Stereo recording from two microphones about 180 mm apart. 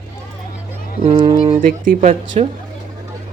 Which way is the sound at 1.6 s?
50° right (ahead or behind).